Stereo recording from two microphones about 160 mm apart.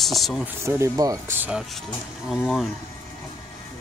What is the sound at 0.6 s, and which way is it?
Speech, 15° right (ahead or behind).